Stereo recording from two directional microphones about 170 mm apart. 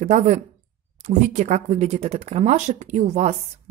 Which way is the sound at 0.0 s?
45° right (ahead or behind).